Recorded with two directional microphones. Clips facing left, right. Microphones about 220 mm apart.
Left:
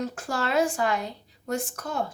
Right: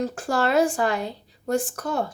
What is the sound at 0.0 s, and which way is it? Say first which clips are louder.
Speech: right 5 dB; 35° right (ahead or behind).